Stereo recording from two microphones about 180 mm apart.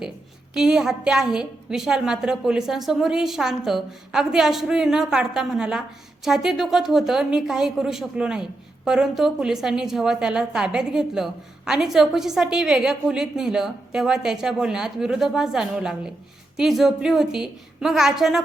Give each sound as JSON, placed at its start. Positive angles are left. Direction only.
{"t": 0.5, "sound": "a woman's voice", "side_deg": -5}